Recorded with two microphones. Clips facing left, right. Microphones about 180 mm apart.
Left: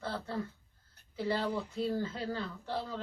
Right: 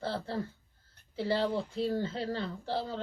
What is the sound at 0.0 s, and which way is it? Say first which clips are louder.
Speech: right 3 dB; 30° right (ahead or behind).